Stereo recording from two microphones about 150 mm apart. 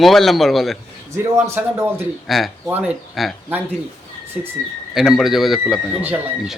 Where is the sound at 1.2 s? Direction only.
15° right (ahead or behind).